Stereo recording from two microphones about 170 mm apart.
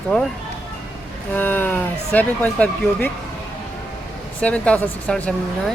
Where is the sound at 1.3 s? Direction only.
10° left (ahead or behind).